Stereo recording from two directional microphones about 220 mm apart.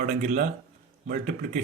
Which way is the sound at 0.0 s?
35° right (ahead or behind).